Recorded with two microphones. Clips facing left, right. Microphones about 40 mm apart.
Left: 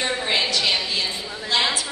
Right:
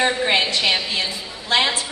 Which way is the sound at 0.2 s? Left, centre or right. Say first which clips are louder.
Right 3 dB; right.